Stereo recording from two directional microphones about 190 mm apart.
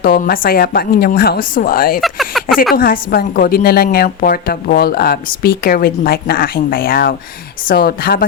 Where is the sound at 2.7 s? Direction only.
50° left (ahead or behind).